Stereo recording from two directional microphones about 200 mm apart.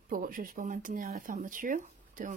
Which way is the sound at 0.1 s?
45° right (ahead or behind).